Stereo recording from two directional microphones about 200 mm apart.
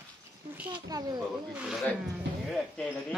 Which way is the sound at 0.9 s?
20° right (ahead or behind).